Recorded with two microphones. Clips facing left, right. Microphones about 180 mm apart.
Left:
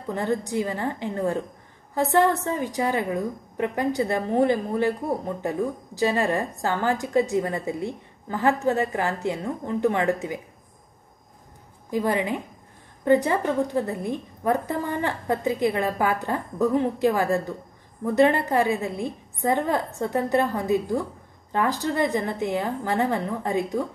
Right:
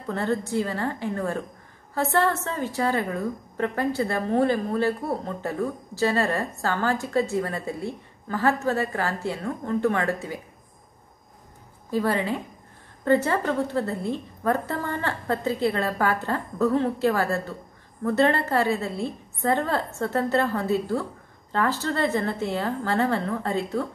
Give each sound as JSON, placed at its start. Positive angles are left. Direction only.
{"t": 0.0, "sound": "a woman's voice", "side_deg": 15}
{"t": 11.9, "sound": "a woman's voice", "side_deg": 15}